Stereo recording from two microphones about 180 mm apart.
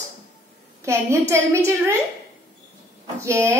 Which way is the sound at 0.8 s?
15° right (ahead or behind).